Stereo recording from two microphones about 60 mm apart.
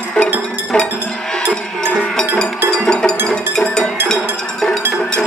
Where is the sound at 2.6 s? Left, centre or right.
Centre.